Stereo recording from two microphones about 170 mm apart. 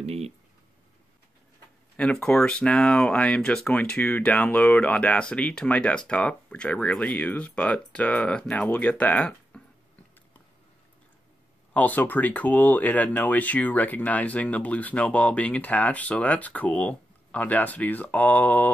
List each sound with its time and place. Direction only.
0.0 s a sound: 35° right (ahead or behind)
2.0 s speech: 5° left (ahead or behind)
11.7 s speech: 10° left (ahead or behind)